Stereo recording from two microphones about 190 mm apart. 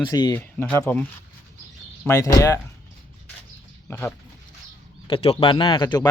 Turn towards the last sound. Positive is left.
turn(degrees=25)  # may be behind; listen again after turning